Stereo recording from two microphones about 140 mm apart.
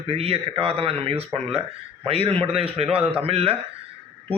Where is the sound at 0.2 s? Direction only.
45° right (ahead or behind).